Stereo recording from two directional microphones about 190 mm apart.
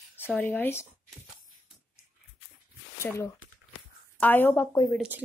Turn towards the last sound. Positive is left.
turn(degrees=15)  # may be behind; listen again after turning